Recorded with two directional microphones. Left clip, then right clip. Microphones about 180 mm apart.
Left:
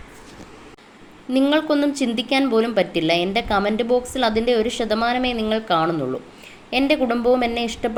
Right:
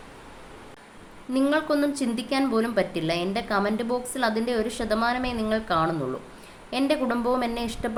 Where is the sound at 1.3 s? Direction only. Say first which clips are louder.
Left 5 dB; 15° left (ahead or behind).